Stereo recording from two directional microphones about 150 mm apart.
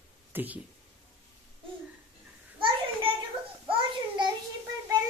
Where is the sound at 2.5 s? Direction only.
35° right (ahead or behind).